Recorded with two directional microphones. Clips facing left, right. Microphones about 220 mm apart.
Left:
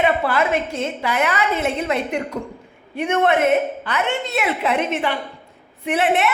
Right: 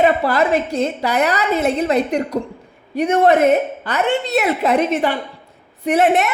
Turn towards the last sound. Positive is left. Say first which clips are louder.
# right 4 dB
turn(degrees=-40)  # may be behind; listen again after turning